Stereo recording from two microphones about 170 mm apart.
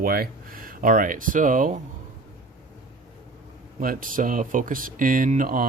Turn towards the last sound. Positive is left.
turn(degrees=-55)  # may be behind; listen again after turning